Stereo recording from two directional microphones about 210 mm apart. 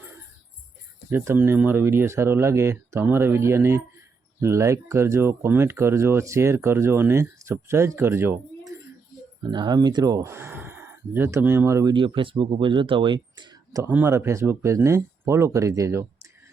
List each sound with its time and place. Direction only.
1.1 s speech: 10° right (ahead or behind)
13.8 s speech: 10° right (ahead or behind)